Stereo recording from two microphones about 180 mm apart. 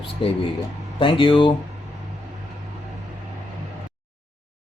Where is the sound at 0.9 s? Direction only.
25° left (ahead or behind).